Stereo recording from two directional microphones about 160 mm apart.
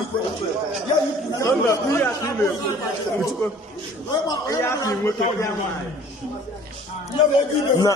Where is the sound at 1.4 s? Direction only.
20° left (ahead or behind).